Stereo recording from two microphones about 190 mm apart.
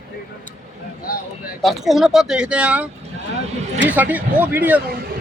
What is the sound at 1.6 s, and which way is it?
Speech, centre (ahead or behind).